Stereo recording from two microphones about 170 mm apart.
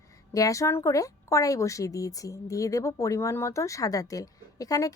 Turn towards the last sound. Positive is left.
turn(degrees=20)  # may be behind; listen again after turning